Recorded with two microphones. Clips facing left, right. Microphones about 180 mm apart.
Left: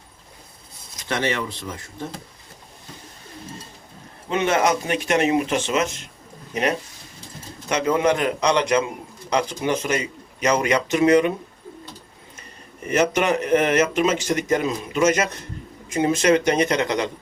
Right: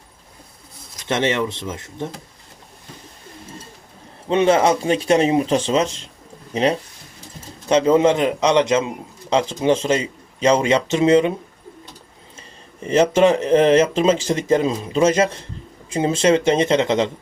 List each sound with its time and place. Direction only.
1.0 s speech: 20° right (ahead or behind)
4.3 s speech: 30° right (ahead or behind)
12.4 s speech: 30° right (ahead or behind)